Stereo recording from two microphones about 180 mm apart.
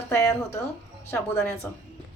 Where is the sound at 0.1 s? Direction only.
15° left (ahead or behind).